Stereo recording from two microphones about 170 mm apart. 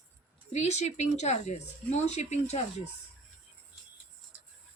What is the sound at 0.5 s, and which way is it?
Speech, 40° left (ahead or behind).